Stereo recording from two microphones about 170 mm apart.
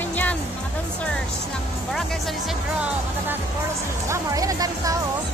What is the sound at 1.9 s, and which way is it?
Speech, centre (ahead or behind).